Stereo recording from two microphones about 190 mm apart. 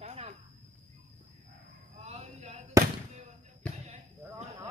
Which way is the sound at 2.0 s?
35° right (ahead or behind).